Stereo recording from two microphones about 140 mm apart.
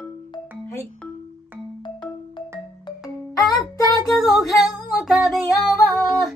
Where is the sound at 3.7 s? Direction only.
25° left (ahead or behind).